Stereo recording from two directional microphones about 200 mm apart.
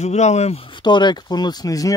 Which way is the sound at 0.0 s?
35° left (ahead or behind).